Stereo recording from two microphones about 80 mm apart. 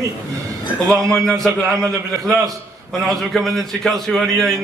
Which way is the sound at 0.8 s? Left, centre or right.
Centre.